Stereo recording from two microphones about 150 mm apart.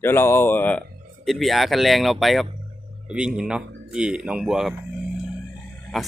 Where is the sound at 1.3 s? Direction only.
Centre (ahead or behind).